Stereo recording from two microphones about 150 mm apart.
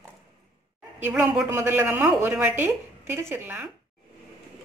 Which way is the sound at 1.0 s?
15° right (ahead or behind).